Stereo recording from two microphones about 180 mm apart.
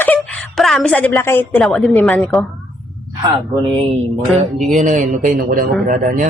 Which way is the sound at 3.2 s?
25° right (ahead or behind).